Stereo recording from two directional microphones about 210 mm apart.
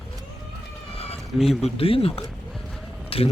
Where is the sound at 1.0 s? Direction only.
30° left (ahead or behind).